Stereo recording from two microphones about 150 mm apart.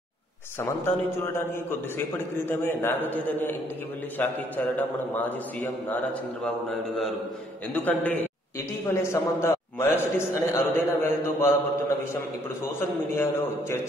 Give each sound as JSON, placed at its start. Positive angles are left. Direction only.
{"t": 0.6, "sound": "a man's voice", "side_deg": 15}
{"t": 7.7, "sound": "a man's voice", "side_deg": 10}
{"t": 12.6, "sound": "a man's voice", "side_deg": 15}